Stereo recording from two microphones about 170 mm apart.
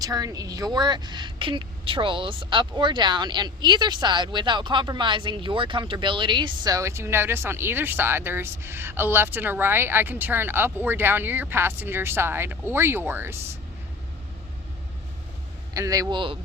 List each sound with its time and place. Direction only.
0.0 s a woman's voice: 20° right (ahead or behind)
15.7 s a woman's voice: 20° right (ahead or behind)